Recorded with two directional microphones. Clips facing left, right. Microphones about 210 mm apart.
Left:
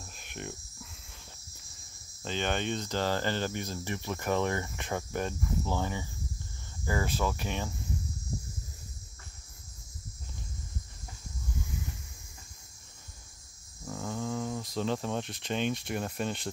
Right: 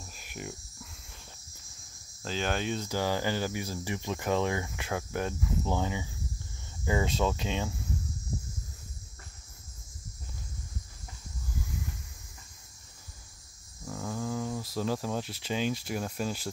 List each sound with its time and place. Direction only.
0.0 s cricket: 5° right (ahead or behind)
2.2 s speech: 5° right (ahead or behind)
11.5 s a sound: centre (ahead or behind)
13.8 s speech: centre (ahead or behind)